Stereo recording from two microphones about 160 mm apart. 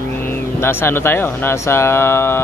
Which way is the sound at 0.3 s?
15° left (ahead or behind).